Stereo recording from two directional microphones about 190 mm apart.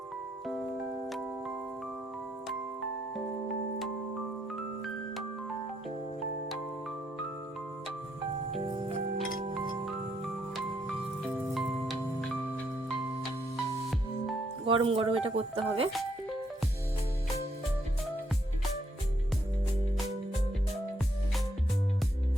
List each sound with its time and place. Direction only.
14.6 s speech: 30° right (ahead or behind)